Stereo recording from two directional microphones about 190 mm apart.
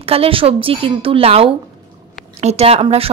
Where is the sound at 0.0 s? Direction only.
30° right (ahead or behind).